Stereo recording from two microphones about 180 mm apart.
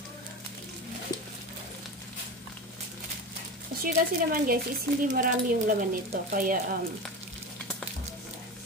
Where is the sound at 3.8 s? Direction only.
55° right (ahead or behind).